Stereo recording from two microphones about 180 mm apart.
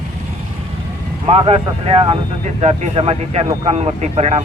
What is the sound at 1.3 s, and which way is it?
Speech, 30° right (ahead or behind).